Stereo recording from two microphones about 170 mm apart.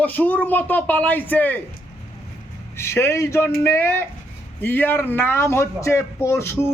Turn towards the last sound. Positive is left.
turn(degrees=15)  # may be behind; listen again after turning